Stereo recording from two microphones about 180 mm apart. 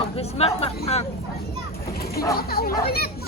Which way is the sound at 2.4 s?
55° left (ahead or behind).